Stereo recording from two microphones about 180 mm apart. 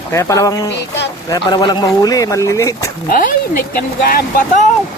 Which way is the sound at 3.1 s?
50° left (ahead or behind).